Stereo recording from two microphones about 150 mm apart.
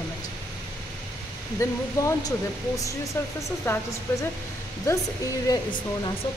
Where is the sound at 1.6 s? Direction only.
20° left (ahead or behind).